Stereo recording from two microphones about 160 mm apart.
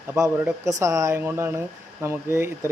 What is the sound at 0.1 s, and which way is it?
Speech, 15° right (ahead or behind).